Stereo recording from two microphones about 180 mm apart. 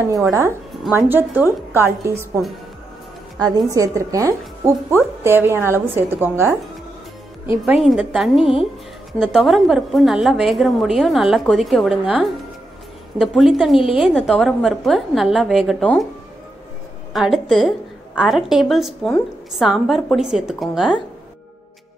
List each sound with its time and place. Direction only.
0.0 s a woman's voice: 15° right (ahead or behind)
7.6 s a woman's voice: 5° right (ahead or behind)
17.1 s a woman's voice: centre (ahead or behind)